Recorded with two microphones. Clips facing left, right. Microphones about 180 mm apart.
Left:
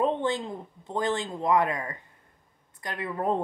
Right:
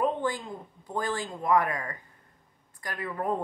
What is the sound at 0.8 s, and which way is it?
Speech, 25° left (ahead or behind).